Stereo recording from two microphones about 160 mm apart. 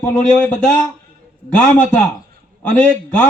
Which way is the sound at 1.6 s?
5° left (ahead or behind).